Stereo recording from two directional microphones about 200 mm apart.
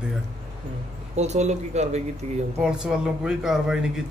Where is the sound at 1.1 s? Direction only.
35° right (ahead or behind).